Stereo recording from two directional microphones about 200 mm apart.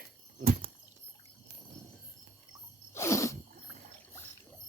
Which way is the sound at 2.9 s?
15° left (ahead or behind).